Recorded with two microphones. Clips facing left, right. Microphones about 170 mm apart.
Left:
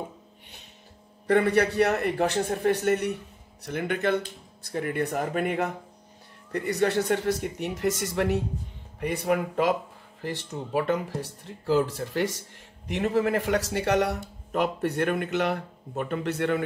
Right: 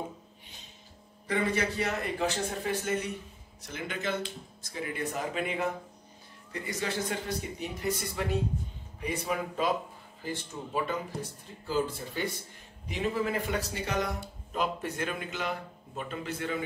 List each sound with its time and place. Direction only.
1.2 s a man's voice: 65° left (ahead or behind); by 8.4 s 80° left
9.0 s a man's voice: 65° left (ahead or behind)